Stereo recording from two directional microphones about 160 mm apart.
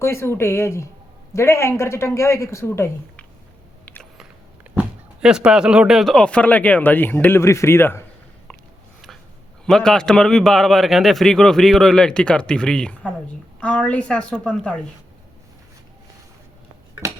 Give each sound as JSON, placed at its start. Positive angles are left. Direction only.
{"t": 0.0, "sound": "speech", "side_deg": 15}
{"t": 4.7, "sound": "speech", "side_deg": -5}
{"t": 9.6, "sound": "a man's voice", "side_deg": 5}